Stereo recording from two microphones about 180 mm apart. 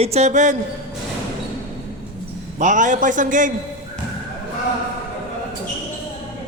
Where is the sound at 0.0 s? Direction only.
35° right (ahead or behind).